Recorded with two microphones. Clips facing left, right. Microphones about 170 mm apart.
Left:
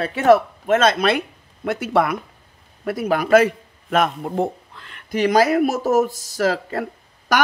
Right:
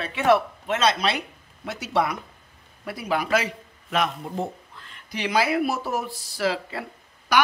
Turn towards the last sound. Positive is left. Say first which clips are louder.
# left 2 dB
turn(degrees=45)  # may be behind; listen again after turning